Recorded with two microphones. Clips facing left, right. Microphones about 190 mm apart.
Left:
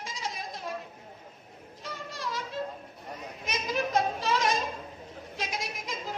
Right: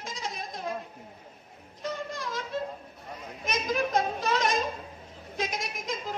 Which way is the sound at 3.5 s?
50° right (ahead or behind).